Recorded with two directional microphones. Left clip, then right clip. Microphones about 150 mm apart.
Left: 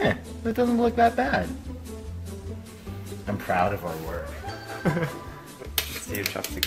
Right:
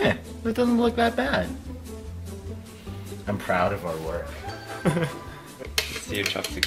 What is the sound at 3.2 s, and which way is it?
Speech, 25° left (ahead or behind).